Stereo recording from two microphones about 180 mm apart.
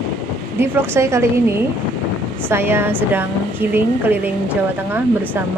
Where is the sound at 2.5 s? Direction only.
10° right (ahead or behind).